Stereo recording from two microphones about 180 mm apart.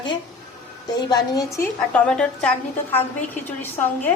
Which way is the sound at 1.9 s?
5° left (ahead or behind).